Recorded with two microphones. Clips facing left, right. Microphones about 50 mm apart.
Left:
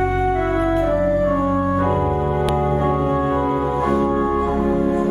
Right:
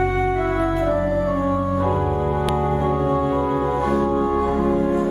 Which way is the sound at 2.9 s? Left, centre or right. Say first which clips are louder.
Left 1 dB; centre.